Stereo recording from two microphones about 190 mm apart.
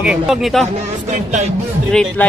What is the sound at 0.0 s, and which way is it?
Speech, 5° right (ahead or behind).